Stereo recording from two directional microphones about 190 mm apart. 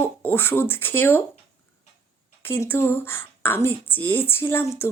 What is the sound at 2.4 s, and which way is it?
Speech, 10° left (ahead or behind).